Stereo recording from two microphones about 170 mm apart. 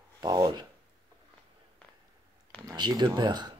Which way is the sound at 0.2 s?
25° right (ahead or behind).